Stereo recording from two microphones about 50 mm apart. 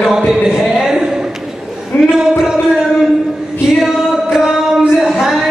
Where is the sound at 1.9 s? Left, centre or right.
Left.